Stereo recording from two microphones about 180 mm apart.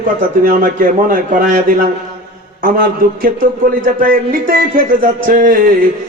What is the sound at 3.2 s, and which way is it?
Speech, 50° right (ahead or behind).